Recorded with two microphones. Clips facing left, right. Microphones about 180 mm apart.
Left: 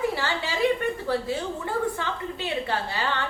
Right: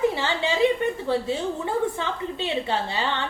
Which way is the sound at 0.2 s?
20° right (ahead or behind).